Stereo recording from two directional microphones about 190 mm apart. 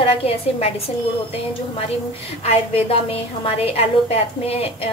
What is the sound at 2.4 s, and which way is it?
A woman's voice, 30° left (ahead or behind).